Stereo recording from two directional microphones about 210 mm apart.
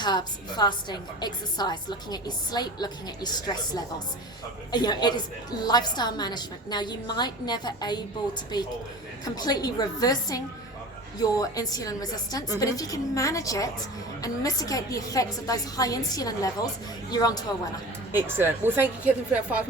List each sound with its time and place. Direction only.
0.0 s a woman's voice: 20° left (ahead or behind)
18.1 s a woman's voice: 10° right (ahead or behind)